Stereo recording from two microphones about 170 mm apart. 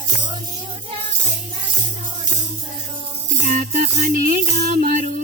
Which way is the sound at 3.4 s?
45° right (ahead or behind).